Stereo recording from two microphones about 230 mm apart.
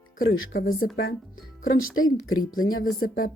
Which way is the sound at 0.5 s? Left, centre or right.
Left.